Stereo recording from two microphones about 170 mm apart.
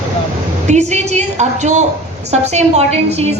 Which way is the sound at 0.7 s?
45° right (ahead or behind).